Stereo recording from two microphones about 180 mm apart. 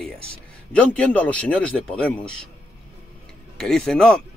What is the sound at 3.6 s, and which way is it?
Speech, 5° left (ahead or behind).